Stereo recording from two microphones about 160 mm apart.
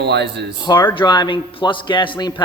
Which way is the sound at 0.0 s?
90° right.